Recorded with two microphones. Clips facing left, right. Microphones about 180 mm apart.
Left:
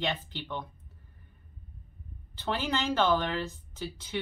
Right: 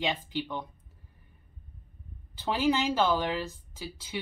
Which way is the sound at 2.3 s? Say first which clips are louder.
Right 4 dB; 10° right (ahead or behind).